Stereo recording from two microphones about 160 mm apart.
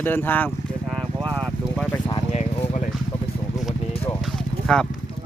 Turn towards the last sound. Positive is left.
turn(degrees=0)  # may be behind; listen again after turning